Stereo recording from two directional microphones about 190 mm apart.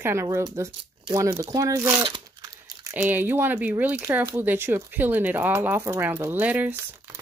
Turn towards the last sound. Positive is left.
turn(degrees=-10)  # may be behind; listen again after turning